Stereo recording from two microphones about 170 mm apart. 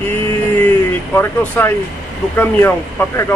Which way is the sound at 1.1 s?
15° left (ahead or behind).